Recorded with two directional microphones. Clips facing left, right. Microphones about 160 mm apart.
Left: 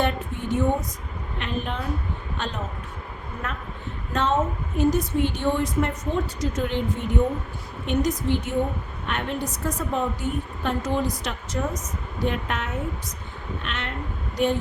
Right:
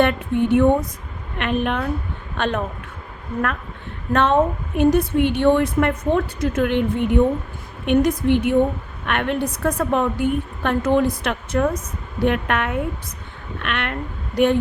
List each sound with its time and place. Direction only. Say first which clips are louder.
0.0 s a woman's voice: right 8 dB; 65° right (ahead or behind)
4.1 s a woman's voice: right 6 dB; 60° right (ahead or behind)